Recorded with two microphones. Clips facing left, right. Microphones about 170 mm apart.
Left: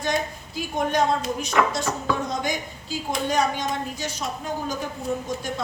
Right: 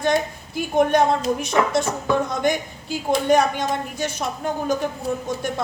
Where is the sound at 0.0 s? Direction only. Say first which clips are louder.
Right 5 dB; 55° right (ahead or behind).